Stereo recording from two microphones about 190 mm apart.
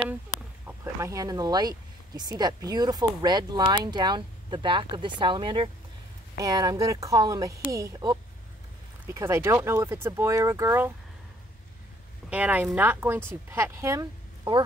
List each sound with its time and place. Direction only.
0.7 s speech: 15° right (ahead or behind)
12.3 s speech: 10° right (ahead or behind)